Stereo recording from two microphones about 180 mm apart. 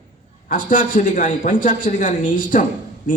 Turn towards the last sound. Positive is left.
turn(degrees=45)  # may be behind; listen again after turning